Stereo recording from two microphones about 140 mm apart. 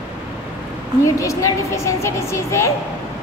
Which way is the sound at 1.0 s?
25° left (ahead or behind).